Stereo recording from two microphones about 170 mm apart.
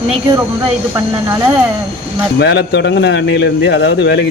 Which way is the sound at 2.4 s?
90° left.